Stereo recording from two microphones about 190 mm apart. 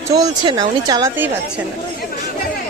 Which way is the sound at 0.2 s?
20° right (ahead or behind).